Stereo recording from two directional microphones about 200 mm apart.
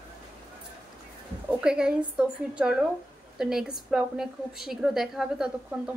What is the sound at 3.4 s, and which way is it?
A woman's voice, 5° right (ahead or behind).